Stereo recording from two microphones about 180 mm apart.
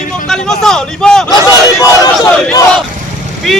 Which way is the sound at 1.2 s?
20° left (ahead or behind).